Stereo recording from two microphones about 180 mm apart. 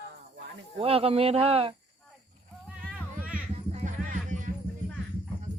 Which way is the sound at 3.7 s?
40° right (ahead or behind).